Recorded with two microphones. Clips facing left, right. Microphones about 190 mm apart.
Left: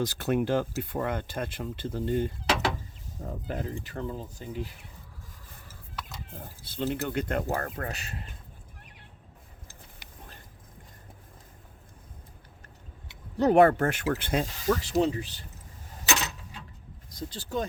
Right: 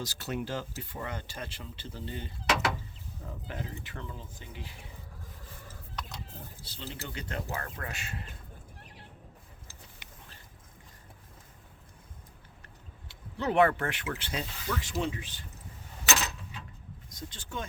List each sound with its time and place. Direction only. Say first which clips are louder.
0.0 s speech: left 9 dB; 55° left (ahead or behind)
6.0 s a sound: left 1 dB; 5° left (ahead or behind)
6.3 s speech: left 7 dB; 50° left (ahead or behind)
13.3 s speech: left 6 dB; 40° left (ahead or behind)
14.8 s speech: left 7 dB; 40° left (ahead or behind)
17.1 s speech: left 8 dB; 35° left (ahead or behind)